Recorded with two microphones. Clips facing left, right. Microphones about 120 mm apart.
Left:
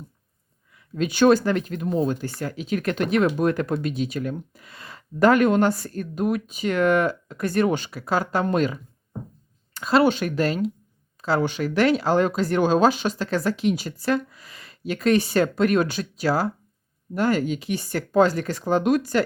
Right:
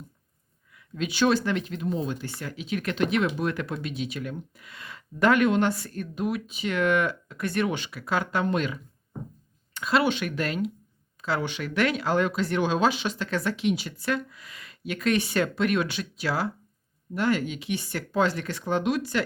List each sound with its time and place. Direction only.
0.9 s speech: 45° left (ahead or behind)